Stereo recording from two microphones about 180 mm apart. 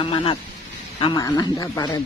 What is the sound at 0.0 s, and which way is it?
Speech, 30° left (ahead or behind).